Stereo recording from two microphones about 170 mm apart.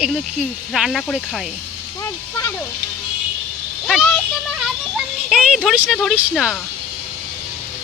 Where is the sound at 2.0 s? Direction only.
20° left (ahead or behind).